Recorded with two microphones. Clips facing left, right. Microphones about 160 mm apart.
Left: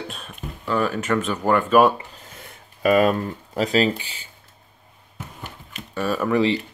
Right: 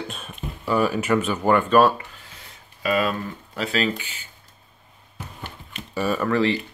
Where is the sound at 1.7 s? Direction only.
15° left (ahead or behind).